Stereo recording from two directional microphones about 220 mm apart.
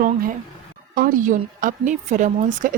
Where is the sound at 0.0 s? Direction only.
40° right (ahead or behind).